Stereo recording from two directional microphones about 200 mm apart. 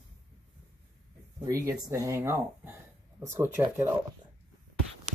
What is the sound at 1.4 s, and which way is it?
Speech, 15° right (ahead or behind).